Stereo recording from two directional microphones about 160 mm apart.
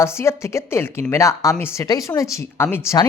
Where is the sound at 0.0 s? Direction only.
15° left (ahead or behind).